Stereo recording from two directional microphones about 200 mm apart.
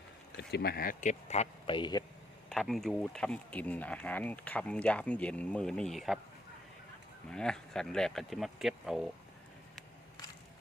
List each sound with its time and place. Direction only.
0.3 s speech: 55° left (ahead or behind); by 2.0 s 20° left (ahead or behind)
2.5 s speech: centre (ahead or behind)
7.3 s speech: 5° left (ahead or behind)